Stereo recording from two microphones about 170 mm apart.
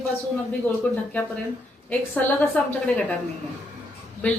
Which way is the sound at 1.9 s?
10° left (ahead or behind).